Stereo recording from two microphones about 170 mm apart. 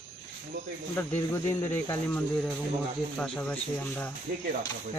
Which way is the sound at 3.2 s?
5° left (ahead or behind).